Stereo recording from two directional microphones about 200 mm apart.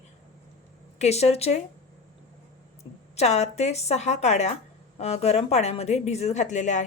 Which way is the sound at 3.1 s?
35° left (ahead or behind).